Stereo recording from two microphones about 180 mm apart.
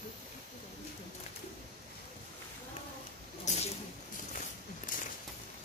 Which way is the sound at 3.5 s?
40° left (ahead or behind).